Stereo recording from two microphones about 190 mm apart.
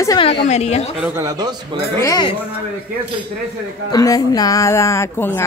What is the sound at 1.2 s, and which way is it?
Speech, 20° right (ahead or behind).